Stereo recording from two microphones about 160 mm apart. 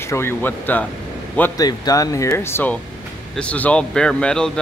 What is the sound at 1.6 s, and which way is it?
Speech, 20° left (ahead or behind).